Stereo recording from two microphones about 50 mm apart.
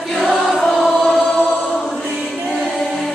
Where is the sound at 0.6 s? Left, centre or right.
Centre.